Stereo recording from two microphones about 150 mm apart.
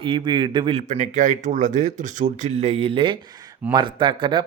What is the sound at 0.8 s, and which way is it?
Speech, 55° right (ahead or behind).